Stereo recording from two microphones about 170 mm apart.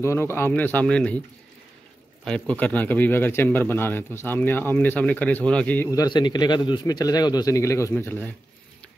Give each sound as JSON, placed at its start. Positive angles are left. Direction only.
{"t": 0.0, "sound": "a man's voice", "side_deg": 15}
{"t": 2.2, "sound": "a man's voice", "side_deg": 5}
{"t": 5.9, "sound": "a man's voice", "side_deg": 25}